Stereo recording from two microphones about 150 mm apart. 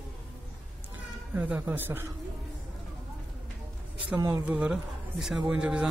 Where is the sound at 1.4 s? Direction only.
10° right (ahead or behind).